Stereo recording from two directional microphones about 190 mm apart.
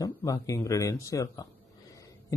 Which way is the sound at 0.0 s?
15° left (ahead or behind).